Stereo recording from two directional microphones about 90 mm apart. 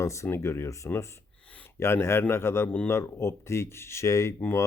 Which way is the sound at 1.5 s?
15° left (ahead or behind).